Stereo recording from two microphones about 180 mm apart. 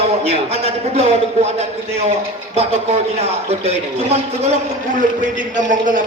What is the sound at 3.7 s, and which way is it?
Speech, 40° right (ahead or behind).